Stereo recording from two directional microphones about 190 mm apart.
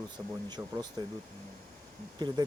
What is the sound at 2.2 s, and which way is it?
Speech, 20° right (ahead or behind).